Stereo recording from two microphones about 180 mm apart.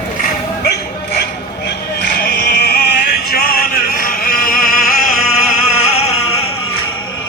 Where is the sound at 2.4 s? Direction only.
60° left (ahead or behind).